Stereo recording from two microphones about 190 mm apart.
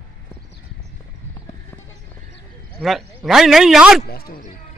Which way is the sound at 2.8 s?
Centre (ahead or behind).